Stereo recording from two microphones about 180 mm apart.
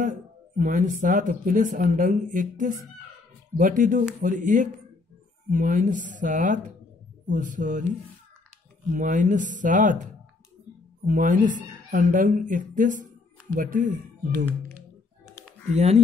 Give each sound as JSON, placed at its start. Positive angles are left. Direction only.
{"t": 0.0, "sound": "speech", "side_deg": -45}
{"t": 8.9, "sound": "speech", "side_deg": -45}
{"t": 11.1, "sound": "speech", "side_deg": -45}
{"t": 15.7, "sound": "speech", "side_deg": -35}